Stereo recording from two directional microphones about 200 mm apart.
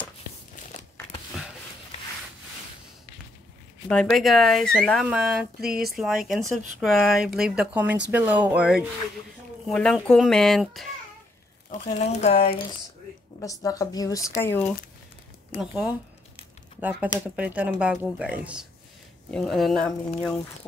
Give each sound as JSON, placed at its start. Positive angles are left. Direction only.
{"t": 3.9, "sound": "speech", "side_deg": 0}
{"t": 5.6, "sound": "speech", "side_deg": -50}
{"t": 6.2, "sound": "speech", "side_deg": 0}
{"t": 11.7, "sound": "speech", "side_deg": 35}
{"t": 13.4, "sound": "speech", "side_deg": 15}
{"t": 15.5, "sound": "speech", "side_deg": -5}
{"t": 17.6, "sound": "speech", "side_deg": -5}